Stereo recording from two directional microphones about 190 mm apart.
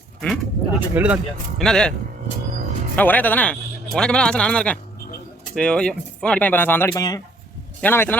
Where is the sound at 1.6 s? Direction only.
5° left (ahead or behind).